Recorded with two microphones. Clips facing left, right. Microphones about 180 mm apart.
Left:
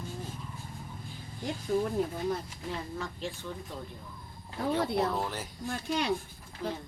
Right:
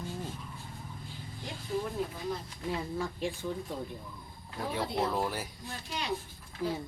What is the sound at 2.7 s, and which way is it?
Speech, 10° right (ahead or behind).